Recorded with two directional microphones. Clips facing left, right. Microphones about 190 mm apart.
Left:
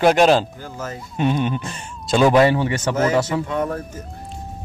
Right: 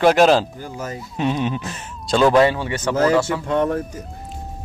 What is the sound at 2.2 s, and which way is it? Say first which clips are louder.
Speech: even; 15° left (ahead or behind).